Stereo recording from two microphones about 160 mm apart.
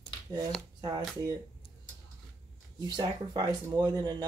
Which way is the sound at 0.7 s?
25° right (ahead or behind).